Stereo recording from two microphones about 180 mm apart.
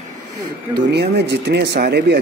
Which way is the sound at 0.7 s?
65° right (ahead or behind).